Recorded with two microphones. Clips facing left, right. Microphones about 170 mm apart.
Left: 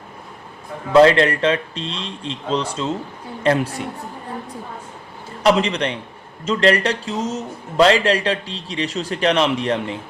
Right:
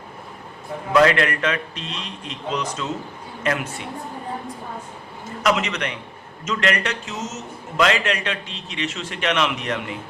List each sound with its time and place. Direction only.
0.9 s a man's voice: 30° left (ahead or behind)
5.4 s a man's voice: 30° left (ahead or behind)